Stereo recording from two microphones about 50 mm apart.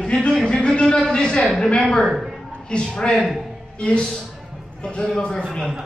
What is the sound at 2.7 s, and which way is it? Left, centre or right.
Speech, centre.